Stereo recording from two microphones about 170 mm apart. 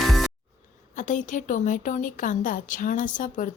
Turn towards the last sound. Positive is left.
turn(degrees=50)  # may be behind; listen again after turning